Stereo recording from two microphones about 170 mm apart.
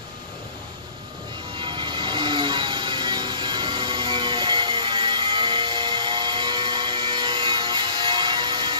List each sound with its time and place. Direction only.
1.6 s music: 30° right (ahead or behind)